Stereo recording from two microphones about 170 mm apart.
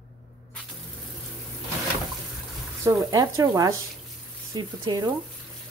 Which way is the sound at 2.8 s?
20° right (ahead or behind).